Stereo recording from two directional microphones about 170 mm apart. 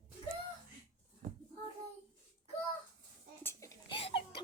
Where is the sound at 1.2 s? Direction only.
55° right (ahead or behind).